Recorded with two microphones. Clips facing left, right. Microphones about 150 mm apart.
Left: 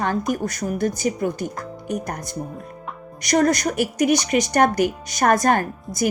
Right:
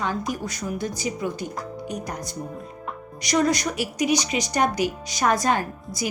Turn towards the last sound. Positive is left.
turn(degrees=50)  # may be behind; listen again after turning